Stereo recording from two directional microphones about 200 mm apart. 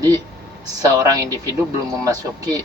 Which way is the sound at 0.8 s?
15° right (ahead or behind).